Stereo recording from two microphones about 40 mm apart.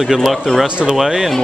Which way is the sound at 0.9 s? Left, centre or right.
Centre.